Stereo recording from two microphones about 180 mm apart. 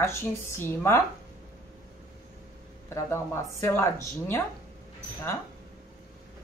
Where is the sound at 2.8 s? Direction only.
15° left (ahead or behind).